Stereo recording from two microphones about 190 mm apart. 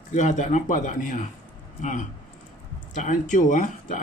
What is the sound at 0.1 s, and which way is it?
A man's voice, 40° left (ahead or behind).